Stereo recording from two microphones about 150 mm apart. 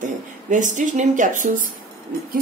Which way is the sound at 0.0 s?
60° right (ahead or behind).